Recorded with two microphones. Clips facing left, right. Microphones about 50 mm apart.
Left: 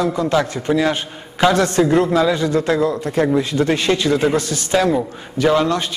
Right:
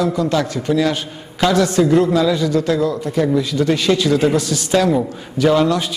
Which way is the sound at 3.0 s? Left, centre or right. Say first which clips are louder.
Even; left.